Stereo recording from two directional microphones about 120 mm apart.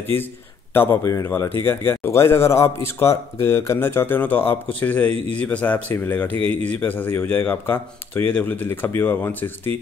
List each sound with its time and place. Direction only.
0.0 s speech: 20° left (ahead or behind)